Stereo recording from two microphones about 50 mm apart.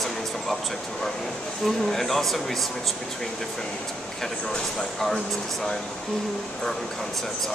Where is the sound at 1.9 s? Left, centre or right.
Centre.